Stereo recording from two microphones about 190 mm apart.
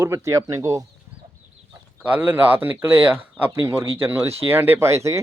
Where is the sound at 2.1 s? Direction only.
10° right (ahead or behind).